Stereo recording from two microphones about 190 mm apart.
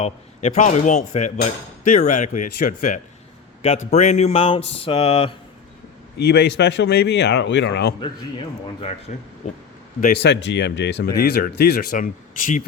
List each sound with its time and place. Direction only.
0.0 s speech: 35° left (ahead or behind)
6.1 s a man's voice: 60° left (ahead or behind)
9.4 s speech: 35° left (ahead or behind)
10.0 s a man's voice: 60° left (ahead or behind)
11.2 s speech: 55° left (ahead or behind)